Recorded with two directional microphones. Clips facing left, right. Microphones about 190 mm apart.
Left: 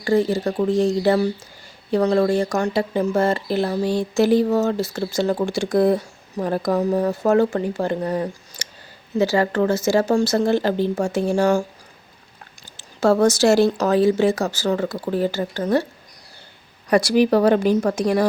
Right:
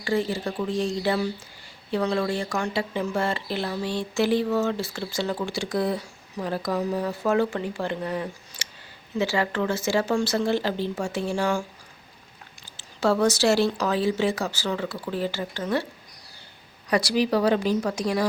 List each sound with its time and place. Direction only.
0.0 s speech: 40° left (ahead or behind)
12.7 s speech: 45° left (ahead or behind)
16.9 s speech: 50° left (ahead or behind)